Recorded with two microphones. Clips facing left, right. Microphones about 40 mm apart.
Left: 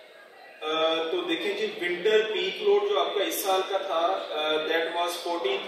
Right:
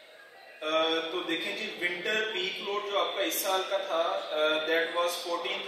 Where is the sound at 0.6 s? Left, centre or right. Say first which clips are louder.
Left 2 dB; left.